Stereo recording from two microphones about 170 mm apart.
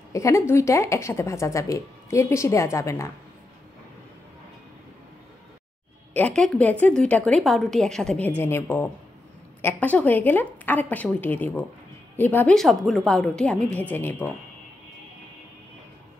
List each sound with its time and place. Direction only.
0.1 s a woman's voice: 15° left (ahead or behind)
6.1 s a woman's voice: 5° left (ahead or behind)